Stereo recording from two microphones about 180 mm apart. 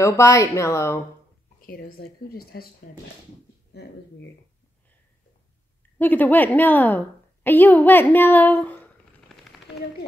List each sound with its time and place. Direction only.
0.0 s speech: 15° left (ahead or behind)
1.6 s speech: 55° left (ahead or behind)
5.9 s a woman's voice: 10° left (ahead or behind)